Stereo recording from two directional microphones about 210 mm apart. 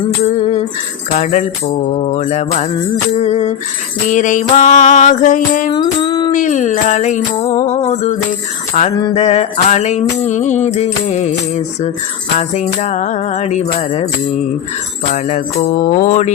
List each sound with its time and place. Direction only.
1.1 s music: 35° left (ahead or behind)
5.7 s music: 20° left (ahead or behind)
6.3 s music: 35° left (ahead or behind)
7.4 s music: 15° left (ahead or behind)
7.7 s music: 30° left (ahead or behind)
9.0 s music: 20° left (ahead or behind)
9.2 s music: 30° left (ahead or behind)
12.4 s music: 35° left (ahead or behind)
15.8 s music: 40° left (ahead or behind)